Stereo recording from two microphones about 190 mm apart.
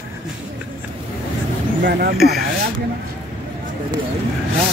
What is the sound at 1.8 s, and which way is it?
Speech, 55° right (ahead or behind).